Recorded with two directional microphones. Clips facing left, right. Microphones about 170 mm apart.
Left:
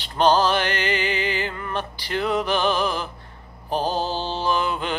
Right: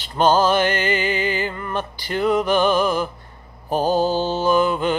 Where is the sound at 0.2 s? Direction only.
Centre (ahead or behind).